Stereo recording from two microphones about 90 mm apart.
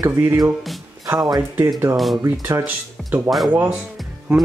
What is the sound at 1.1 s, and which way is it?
Speech, 45° right (ahead or behind).